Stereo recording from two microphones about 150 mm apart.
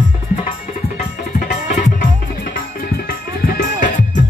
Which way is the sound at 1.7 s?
65° left (ahead or behind).